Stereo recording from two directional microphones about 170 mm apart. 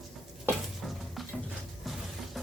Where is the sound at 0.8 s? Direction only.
Centre (ahead or behind).